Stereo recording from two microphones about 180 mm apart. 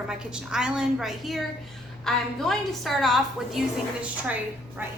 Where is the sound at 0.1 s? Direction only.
5° right (ahead or behind).